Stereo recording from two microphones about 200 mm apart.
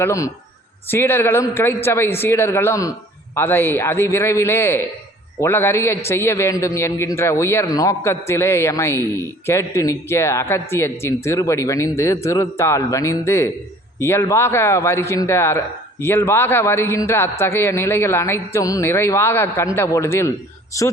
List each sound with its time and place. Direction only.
0.0 s a man's voice: 15° left (ahead or behind)